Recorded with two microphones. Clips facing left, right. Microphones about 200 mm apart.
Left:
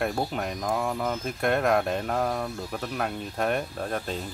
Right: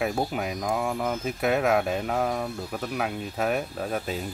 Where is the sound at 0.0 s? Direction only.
5° right (ahead or behind).